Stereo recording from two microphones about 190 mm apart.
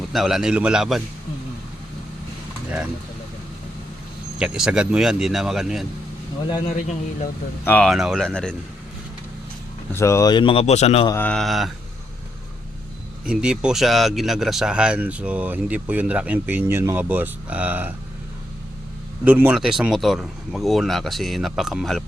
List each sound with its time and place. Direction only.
0.1 s speech: centre (ahead or behind)
4.4 s speech: 5° right (ahead or behind)
7.6 s speech: 5° left (ahead or behind)
9.9 s speech: 15° left (ahead or behind); by 11.1 s 35° left (ahead or behind)
11.1 s speech: 10° left (ahead or behind)
13.2 s speech: 5° right (ahead or behind)
19.2 s speech: 10° right (ahead or behind)